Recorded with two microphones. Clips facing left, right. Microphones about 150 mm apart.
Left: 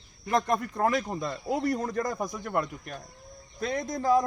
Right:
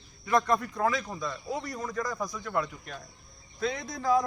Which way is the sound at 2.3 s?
50° left (ahead or behind).